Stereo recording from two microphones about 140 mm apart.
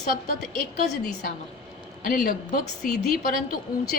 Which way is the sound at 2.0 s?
90° left.